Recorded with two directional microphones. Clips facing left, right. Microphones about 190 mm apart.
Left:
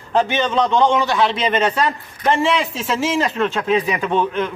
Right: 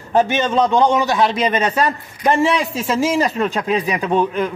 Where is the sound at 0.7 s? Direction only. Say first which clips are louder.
Even; 15° right (ahead or behind).